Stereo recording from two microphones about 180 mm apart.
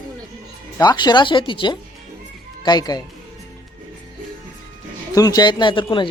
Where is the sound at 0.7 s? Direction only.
25° left (ahead or behind).